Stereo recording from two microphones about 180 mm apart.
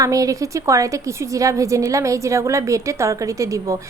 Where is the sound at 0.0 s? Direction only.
20° right (ahead or behind).